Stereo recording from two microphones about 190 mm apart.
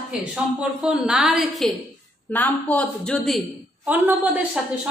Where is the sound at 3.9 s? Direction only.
10° right (ahead or behind).